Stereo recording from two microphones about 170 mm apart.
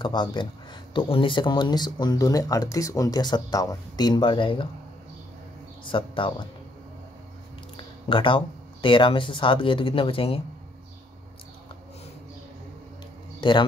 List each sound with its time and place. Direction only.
0.0 s speech: 25° left (ahead or behind)
5.9 s speech: 30° left (ahead or behind)
7.7 s speech: 30° left (ahead or behind)
13.4 s a man's voice: 30° left (ahead or behind)